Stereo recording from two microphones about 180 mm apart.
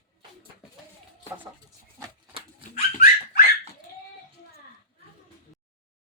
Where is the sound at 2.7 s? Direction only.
50° left (ahead or behind).